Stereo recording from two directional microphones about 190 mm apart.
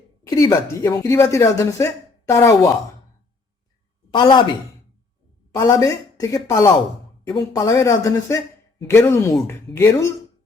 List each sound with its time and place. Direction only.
0.3 s a woman's voice: 20° left (ahead or behind)
4.1 s speech: 25° left (ahead or behind)
5.5 s a woman's voice: 15° left (ahead or behind)